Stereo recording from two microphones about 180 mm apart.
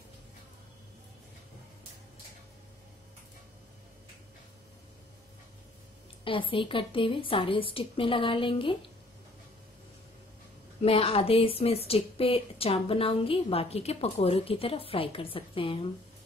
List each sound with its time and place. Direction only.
6.2 s a woman's voice: 30° left (ahead or behind)
10.9 s a woman's voice: 30° left (ahead or behind)